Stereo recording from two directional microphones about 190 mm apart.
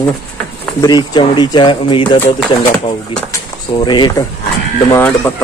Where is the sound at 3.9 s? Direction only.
25° left (ahead or behind).